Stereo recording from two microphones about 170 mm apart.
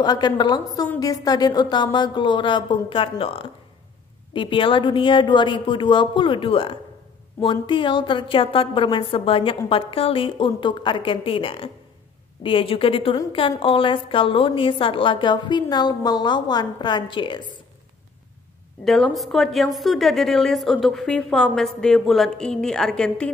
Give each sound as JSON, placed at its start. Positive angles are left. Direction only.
{"t": 0.0, "sound": "a woman's voice", "side_deg": 25}
{"t": 18.9, "sound": "a woman's voice", "side_deg": 0}